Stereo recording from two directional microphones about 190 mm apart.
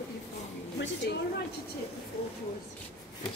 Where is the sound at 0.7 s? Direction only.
65° left (ahead or behind).